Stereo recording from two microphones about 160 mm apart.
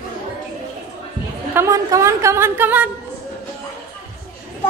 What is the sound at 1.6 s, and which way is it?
A woman's voice, 20° right (ahead or behind).